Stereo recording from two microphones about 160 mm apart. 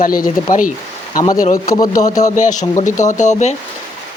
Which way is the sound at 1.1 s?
25° left (ahead or behind).